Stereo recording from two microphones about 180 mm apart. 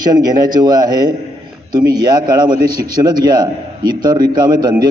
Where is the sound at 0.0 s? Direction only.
20° right (ahead or behind).